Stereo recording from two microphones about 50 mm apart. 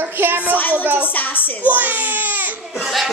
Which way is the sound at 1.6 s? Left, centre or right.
Right.